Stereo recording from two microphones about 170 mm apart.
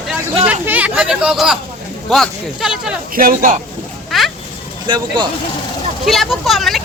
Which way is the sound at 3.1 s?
55° right (ahead or behind).